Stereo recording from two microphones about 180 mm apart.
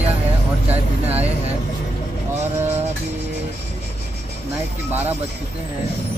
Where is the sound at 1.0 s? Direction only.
35° right (ahead or behind).